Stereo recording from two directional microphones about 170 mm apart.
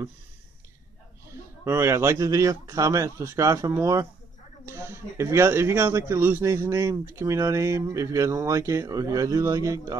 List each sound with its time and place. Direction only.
1.3 s speech: 15° right (ahead or behind)